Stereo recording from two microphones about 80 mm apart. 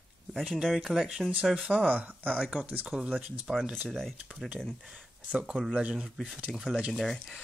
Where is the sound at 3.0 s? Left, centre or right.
Centre.